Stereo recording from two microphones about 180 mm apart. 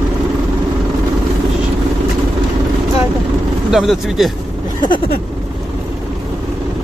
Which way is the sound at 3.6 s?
Centre (ahead or behind).